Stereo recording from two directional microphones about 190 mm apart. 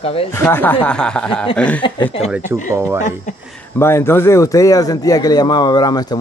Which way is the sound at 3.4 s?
5° left (ahead or behind).